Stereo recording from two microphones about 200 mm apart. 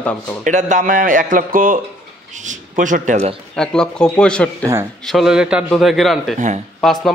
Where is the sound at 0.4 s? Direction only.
40° right (ahead or behind).